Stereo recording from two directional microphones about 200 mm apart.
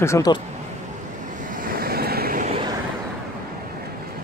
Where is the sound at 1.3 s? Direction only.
40° right (ahead or behind).